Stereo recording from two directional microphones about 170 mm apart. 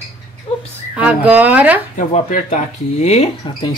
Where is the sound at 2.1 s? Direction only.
45° left (ahead or behind).